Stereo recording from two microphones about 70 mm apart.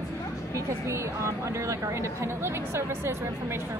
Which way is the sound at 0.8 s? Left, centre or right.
Right.